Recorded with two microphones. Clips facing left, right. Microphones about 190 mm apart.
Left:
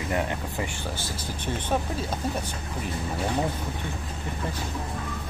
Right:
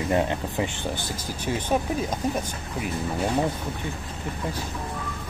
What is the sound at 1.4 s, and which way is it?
Speech, 10° right (ahead or behind).